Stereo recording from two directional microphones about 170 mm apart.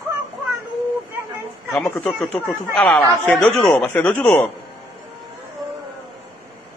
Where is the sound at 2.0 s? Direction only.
Centre (ahead or behind).